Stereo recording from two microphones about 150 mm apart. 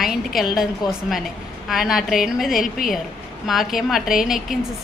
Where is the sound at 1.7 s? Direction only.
Centre (ahead or behind).